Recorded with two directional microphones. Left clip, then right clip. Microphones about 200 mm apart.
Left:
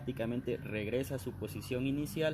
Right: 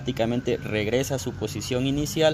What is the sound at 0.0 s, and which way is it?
Speech, 30° right (ahead or behind).